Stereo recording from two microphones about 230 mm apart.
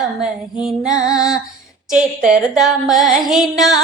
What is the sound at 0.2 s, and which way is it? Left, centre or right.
Music, centre.